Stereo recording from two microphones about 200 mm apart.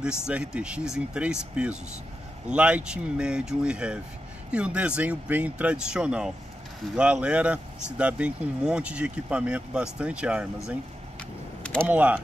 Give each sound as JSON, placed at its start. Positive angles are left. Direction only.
{"t": 0.3, "sound": "speech", "side_deg": -5}
{"t": 11.6, "sound": "typing", "side_deg": 5}
{"t": 11.9, "sound": "speech", "side_deg": -5}